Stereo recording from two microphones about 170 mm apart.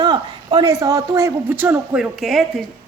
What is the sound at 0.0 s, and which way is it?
A woman's voice, 25° right (ahead or behind).